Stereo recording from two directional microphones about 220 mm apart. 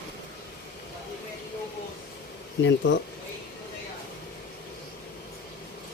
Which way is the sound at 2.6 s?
55° left (ahead or behind).